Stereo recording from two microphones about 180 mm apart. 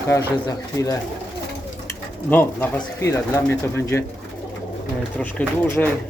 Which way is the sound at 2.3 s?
10° left (ahead or behind).